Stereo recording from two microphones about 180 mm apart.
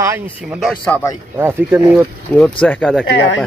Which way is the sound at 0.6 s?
5° left (ahead or behind).